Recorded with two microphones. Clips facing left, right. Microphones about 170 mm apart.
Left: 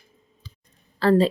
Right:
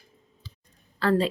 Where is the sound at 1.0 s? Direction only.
35° left (ahead or behind).